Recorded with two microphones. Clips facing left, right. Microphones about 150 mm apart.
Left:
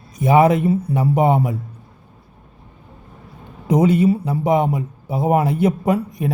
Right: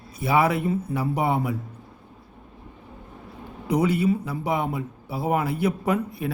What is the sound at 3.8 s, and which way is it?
A woman's voice, 25° left (ahead or behind).